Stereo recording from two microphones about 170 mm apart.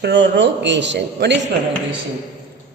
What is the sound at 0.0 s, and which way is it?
A woman's voice, 90° right.